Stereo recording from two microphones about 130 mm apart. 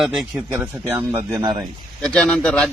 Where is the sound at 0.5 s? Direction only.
15° right (ahead or behind).